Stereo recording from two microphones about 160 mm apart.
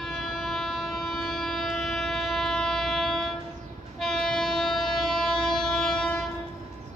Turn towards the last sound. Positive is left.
turn(degrees=5)  # may be behind; listen again after turning